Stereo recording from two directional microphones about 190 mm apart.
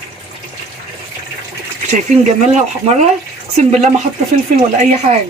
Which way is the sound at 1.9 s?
40° right (ahead or behind).